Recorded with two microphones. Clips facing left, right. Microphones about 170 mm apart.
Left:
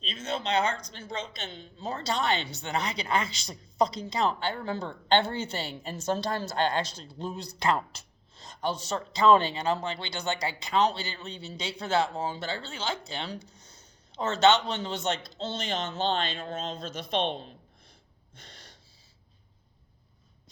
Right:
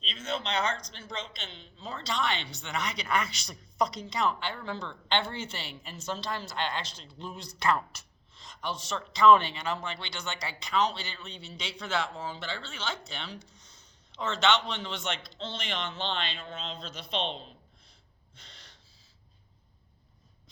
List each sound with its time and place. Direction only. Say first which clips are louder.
0.0 s a man's voice: left 2 dB; 40° left (ahead or behind)
8.4 s a man's voice: left 5 dB; 35° left (ahead or behind)
18.3 s gasp: left 4 dB; 45° left (ahead or behind)